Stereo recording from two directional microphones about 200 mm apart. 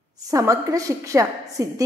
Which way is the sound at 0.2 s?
15° right (ahead or behind).